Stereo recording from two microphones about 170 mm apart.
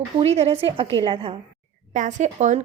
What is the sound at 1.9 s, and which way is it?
Speech, 45° right (ahead or behind).